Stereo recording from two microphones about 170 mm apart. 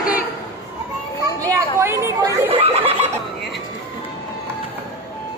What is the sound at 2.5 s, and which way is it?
Snicker, 35° right (ahead or behind).